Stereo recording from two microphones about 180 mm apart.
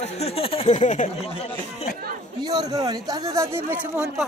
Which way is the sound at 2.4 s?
20° right (ahead or behind).